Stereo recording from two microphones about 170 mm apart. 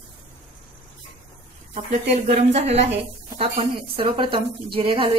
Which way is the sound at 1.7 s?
40° right (ahead or behind).